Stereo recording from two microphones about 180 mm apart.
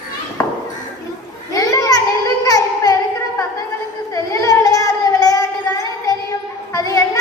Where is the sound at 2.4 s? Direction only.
20° left (ahead or behind).